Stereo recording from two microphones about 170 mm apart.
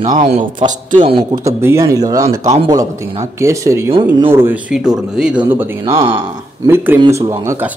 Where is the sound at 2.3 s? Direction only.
40° right (ahead or behind).